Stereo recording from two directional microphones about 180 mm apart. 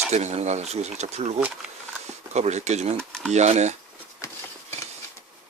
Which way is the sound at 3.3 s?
40° right (ahead or behind).